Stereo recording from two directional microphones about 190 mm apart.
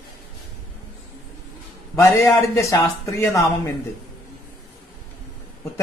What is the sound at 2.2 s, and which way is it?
Speech, 15° left (ahead or behind).